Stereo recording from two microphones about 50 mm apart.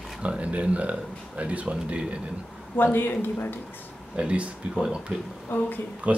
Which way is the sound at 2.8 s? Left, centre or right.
Left.